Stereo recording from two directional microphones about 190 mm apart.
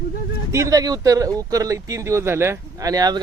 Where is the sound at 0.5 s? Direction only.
15° right (ahead or behind).